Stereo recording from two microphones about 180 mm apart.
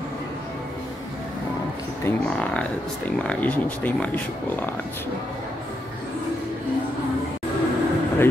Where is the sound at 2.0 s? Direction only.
5° left (ahead or behind).